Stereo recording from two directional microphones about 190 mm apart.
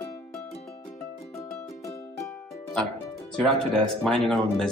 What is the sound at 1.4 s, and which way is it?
Music, 15° left (ahead or behind).